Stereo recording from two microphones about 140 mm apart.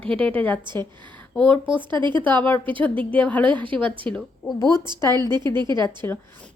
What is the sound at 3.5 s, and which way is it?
Speech, 35° right (ahead or behind).